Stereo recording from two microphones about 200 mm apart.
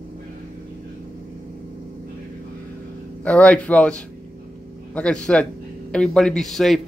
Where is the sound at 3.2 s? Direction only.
5° left (ahead or behind).